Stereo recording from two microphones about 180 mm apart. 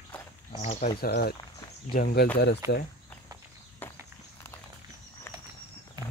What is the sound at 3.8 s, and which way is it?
Walk, 10° left (ahead or behind).